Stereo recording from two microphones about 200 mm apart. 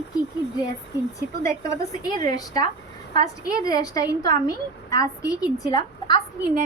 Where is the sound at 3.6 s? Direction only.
20° left (ahead or behind).